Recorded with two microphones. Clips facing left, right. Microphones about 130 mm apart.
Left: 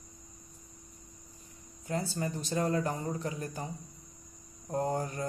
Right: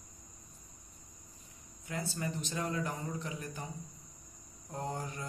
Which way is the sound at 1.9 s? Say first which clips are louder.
Left 4 dB; 35° left (ahead or behind).